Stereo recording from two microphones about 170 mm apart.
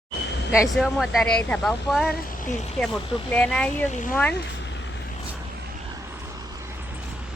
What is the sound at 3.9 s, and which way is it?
Speech, 45° left (ahead or behind).